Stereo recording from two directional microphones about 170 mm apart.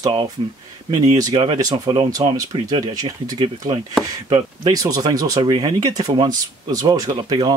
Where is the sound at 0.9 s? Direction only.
20° right (ahead or behind).